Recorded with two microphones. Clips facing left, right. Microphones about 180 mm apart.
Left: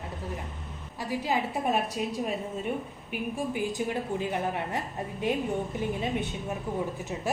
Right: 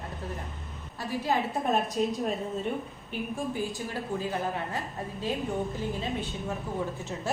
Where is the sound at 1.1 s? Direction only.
10° left (ahead or behind).